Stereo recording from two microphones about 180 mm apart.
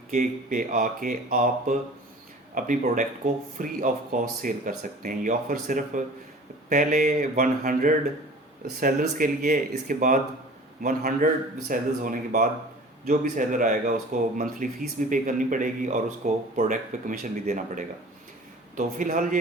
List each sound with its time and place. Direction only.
0.1 s speech: 45° right (ahead or behind)